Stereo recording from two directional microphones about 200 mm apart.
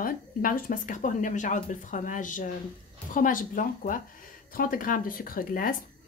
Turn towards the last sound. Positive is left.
turn(degrees=45)  # may be behind; listen again after turning